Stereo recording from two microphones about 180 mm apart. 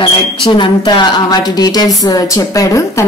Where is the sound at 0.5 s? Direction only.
25° left (ahead or behind).